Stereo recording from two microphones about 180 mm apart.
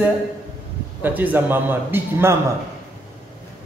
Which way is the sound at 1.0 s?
10° right (ahead or behind).